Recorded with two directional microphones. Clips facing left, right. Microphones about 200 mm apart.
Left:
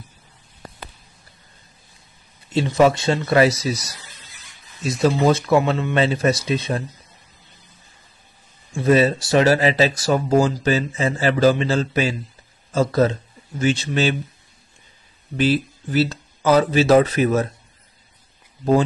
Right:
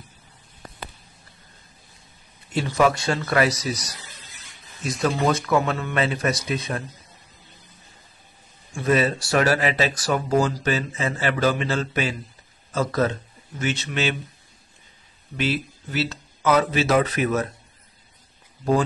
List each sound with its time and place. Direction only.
2.5 s speech: 25° left (ahead or behind)
4.8 s speech: 25° left (ahead or behind)
8.7 s speech: 30° left (ahead or behind)
15.3 s speech: 35° left (ahead or behind)